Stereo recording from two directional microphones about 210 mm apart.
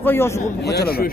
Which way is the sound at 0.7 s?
50° left (ahead or behind).